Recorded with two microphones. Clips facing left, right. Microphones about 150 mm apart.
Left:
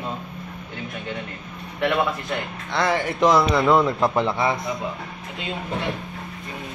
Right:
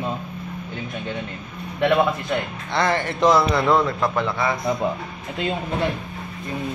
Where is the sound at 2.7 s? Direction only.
5° left (ahead or behind).